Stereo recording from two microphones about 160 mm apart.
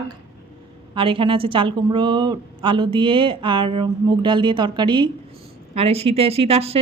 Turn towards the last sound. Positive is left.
turn(degrees=-40)  # may be behind; listen again after turning